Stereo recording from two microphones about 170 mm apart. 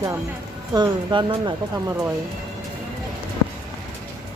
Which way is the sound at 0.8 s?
25° right (ahead or behind).